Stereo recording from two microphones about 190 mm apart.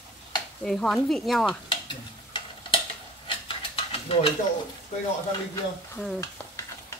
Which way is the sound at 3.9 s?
30° left (ahead or behind).